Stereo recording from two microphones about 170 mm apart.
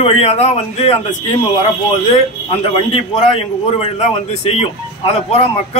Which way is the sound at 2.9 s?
35° left (ahead or behind).